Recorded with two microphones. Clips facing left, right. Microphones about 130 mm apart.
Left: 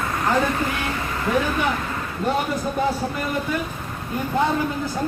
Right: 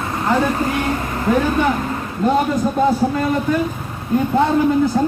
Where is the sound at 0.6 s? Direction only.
35° right (ahead or behind).